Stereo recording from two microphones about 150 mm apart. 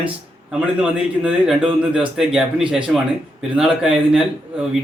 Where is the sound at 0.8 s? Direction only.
5° right (ahead or behind).